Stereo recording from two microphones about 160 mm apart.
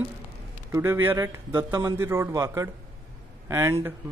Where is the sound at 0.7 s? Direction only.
15° right (ahead or behind).